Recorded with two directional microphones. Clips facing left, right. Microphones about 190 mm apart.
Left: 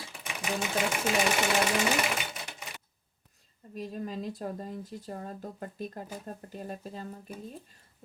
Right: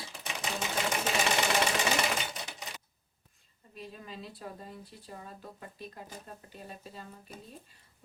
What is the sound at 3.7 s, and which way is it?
Speech, 45° left (ahead or behind).